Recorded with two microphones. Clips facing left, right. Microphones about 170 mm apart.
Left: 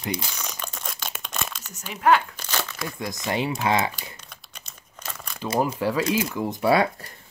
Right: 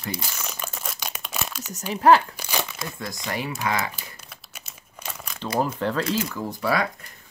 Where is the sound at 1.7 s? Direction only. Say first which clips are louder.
Right 3 dB; 35° right (ahead or behind).